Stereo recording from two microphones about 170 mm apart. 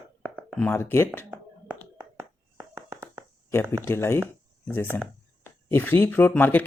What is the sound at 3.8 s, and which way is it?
Speech, 15° left (ahead or behind).